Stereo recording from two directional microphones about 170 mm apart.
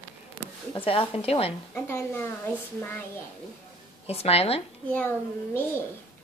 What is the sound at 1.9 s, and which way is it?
A child's voice, 15° left (ahead or behind).